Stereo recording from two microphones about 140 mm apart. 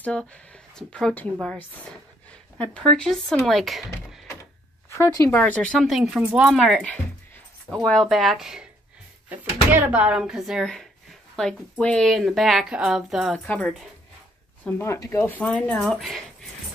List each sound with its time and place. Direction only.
0.0 s speech: 10° left (ahead or behind)
3.0 s speech: 5° left (ahead or behind)
4.8 s speech: 20° left (ahead or behind)
5.4 s speech: 5° left (ahead or behind)
6.6 s speech: 5° left (ahead or behind)
9.7 s speech: 10° right (ahead or behind)
13.5 s speech: 10° left (ahead or behind)